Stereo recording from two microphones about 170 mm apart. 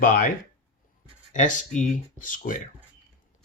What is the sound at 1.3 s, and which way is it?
Speech, 50° left (ahead or behind).